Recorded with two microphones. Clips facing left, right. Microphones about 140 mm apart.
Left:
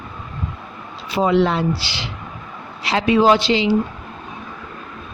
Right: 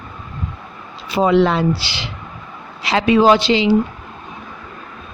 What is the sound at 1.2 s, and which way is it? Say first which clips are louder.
Speech: right 3 dB; 90° right.